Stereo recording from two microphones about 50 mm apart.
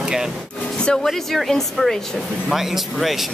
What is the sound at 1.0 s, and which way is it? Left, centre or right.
A woman's voice, centre.